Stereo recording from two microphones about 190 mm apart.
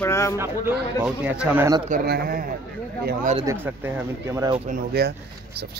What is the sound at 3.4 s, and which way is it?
Speech, 10° right (ahead or behind).